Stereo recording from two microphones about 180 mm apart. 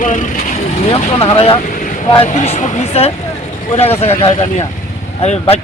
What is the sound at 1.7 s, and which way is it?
Vehicle, 45° left (ahead or behind).